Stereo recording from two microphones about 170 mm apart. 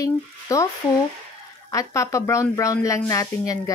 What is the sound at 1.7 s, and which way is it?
Speech, 20° left (ahead or behind).